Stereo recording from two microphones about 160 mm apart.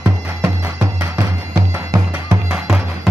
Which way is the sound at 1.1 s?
20° right (ahead or behind).